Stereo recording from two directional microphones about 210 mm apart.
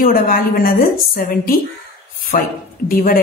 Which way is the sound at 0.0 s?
45° left (ahead or behind).